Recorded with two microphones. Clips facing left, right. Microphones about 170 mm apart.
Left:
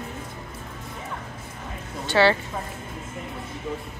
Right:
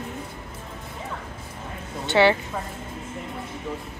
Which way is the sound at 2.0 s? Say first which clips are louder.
Right 1 dB; 20° right (ahead or behind).